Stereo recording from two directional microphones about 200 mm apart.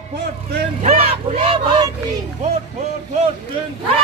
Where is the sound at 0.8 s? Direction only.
30° right (ahead or behind).